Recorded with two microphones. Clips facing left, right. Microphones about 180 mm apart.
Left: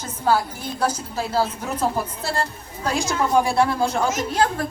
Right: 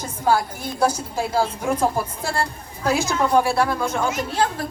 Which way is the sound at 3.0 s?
20° left (ahead or behind).